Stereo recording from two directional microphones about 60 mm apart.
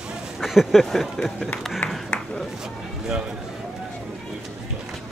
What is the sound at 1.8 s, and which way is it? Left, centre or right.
Speech, left.